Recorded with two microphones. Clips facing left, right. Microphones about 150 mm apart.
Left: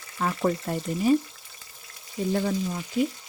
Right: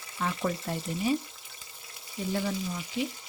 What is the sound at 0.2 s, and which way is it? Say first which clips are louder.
Speech: left 5 dB; 45° left (ahead or behind).